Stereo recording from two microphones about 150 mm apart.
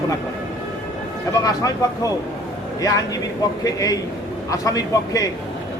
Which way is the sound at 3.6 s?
25° left (ahead or behind).